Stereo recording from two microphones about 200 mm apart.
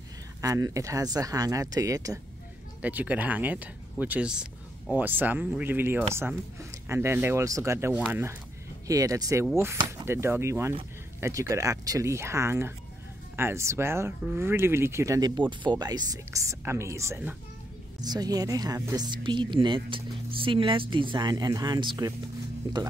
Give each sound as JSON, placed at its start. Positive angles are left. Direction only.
{"t": 0.4, "sound": "speech", "side_deg": -15}